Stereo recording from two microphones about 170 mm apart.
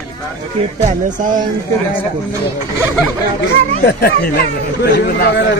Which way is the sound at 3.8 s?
65° left (ahead or behind).